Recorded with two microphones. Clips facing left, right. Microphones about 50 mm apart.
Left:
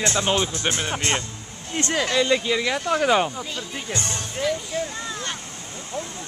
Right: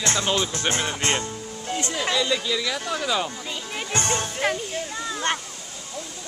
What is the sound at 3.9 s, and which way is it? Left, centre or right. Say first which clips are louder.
Music: right 5 dB; right.